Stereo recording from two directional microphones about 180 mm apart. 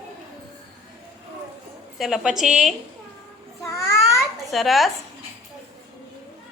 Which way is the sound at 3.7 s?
15° left (ahead or behind).